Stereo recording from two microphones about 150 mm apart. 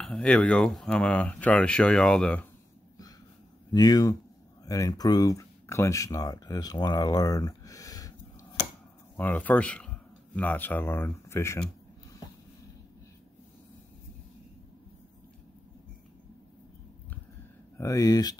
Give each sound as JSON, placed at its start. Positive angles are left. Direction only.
{"t": 0.0, "sound": "speech", "side_deg": 5}
{"t": 3.7, "sound": "speech", "side_deg": 25}
{"t": 9.1, "sound": "speech", "side_deg": 10}
{"t": 17.7, "sound": "speech", "side_deg": 20}